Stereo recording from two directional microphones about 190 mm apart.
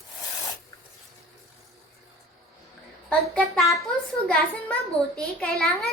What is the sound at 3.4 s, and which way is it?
Speech, centre (ahead or behind).